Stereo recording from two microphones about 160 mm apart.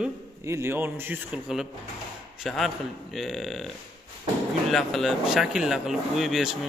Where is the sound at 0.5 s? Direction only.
15° right (ahead or behind).